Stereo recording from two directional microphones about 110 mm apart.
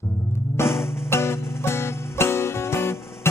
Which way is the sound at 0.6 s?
25° left (ahead or behind).